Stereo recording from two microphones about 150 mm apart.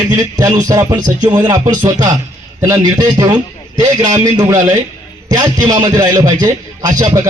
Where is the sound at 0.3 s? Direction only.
25° right (ahead or behind).